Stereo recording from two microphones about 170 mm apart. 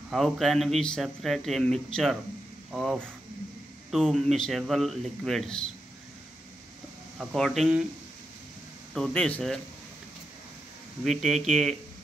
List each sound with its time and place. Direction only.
0.1 s speech: centre (ahead or behind)
7.2 s speech: centre (ahead or behind)
8.9 s speech: 5° left (ahead or behind)
11.1 s speech: centre (ahead or behind)